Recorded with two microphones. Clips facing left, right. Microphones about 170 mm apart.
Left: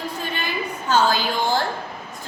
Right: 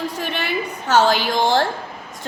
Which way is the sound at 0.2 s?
75° right (ahead or behind).